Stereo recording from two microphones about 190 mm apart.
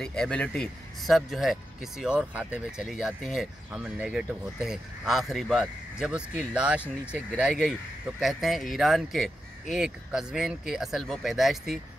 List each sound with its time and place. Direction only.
0.0 s speech: 5° left (ahead or behind)